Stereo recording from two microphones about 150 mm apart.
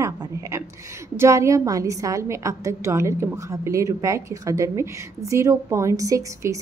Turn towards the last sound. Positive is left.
turn(degrees=-20)  # may be behind; listen again after turning